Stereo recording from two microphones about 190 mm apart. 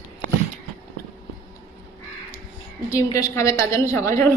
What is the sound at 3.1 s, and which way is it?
A woman's voice, 15° left (ahead or behind).